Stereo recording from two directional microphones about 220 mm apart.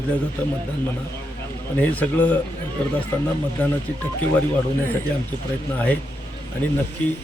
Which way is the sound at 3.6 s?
5° left (ahead or behind).